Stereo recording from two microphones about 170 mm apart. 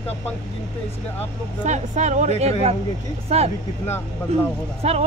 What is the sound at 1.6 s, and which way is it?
Speech, 45° right (ahead or behind).